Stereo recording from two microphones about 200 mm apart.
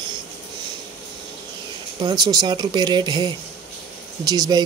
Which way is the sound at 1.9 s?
20° right (ahead or behind).